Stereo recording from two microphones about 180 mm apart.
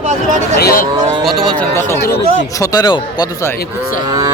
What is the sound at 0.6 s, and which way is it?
Speech, 55° left (ahead or behind).